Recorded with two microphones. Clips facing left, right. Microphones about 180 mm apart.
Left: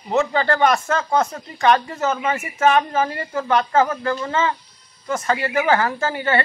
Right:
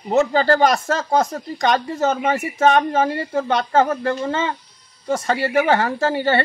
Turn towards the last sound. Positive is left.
turn(degrees=-30)  # may be behind; listen again after turning